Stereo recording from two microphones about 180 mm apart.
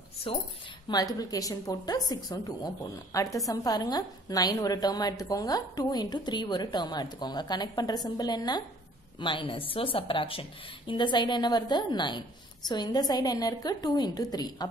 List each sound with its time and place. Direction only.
0.8 s a woman's voice: 20° left (ahead or behind)